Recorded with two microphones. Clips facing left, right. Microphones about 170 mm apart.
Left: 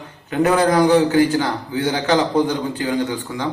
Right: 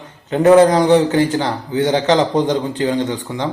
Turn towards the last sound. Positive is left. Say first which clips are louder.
# right 2 dB
turn(degrees=-20)  # may be behind; listen again after turning